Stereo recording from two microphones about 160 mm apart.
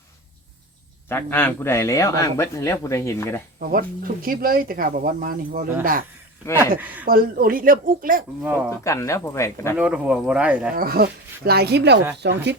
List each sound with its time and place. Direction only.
1.0 s a man's voice: 15° left (ahead or behind)
3.6 s speech: 65° right (ahead or behind)
6.6 s speech: 10° right (ahead or behind)
7.0 s speech: 65° right (ahead or behind)
8.7 s a man's voice: 20° left (ahead or behind)
9.7 s speech: 10° right (ahead or behind)
10.8 s speech: 70° right (ahead or behind); by 12.5 s 90° right